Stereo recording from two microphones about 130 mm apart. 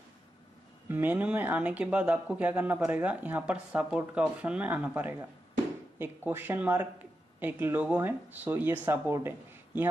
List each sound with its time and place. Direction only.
0.8 s speech: 15° right (ahead or behind)